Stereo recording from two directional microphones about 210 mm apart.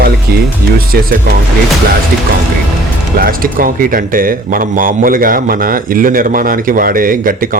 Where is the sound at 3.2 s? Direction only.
40° right (ahead or behind).